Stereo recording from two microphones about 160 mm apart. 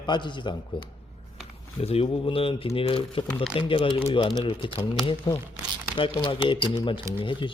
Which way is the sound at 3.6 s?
35° left (ahead or behind).